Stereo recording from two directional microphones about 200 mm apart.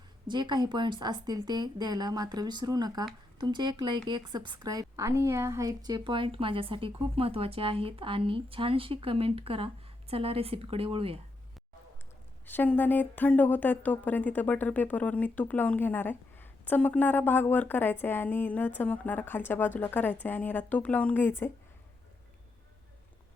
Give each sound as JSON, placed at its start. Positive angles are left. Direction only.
{"t": 0.3, "sound": "a woman's voice", "side_deg": -20}
{"t": 12.5, "sound": "speech", "side_deg": 10}